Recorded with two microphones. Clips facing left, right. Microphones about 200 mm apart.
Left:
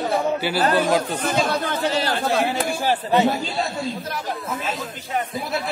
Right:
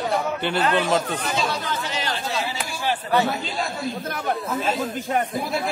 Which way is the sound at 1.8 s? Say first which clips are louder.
Left 7 dB; 35° left (ahead or behind).